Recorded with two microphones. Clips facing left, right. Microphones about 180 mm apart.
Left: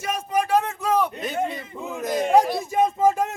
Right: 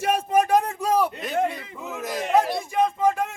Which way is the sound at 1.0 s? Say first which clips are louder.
Right 1 dB; centre (ahead or behind).